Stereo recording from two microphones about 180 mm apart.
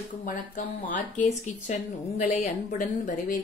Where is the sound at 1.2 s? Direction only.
40° left (ahead or behind).